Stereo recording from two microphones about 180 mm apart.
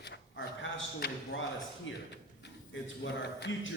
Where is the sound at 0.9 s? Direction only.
75° left (ahead or behind).